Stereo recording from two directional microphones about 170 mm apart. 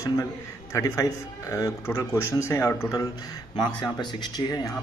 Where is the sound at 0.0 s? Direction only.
20° left (ahead or behind).